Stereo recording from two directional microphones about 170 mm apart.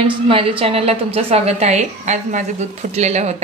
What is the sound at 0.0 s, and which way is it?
A woman's voice, 30° right (ahead or behind).